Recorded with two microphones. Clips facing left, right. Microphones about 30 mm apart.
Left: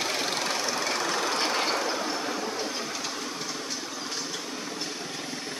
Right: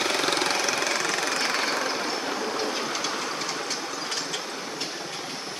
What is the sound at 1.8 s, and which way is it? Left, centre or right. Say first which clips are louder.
Train: right 1 dB; right.